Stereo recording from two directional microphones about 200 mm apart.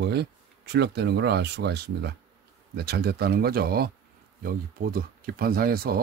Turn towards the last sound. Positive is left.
turn(degrees=-50)  # may be behind; listen again after turning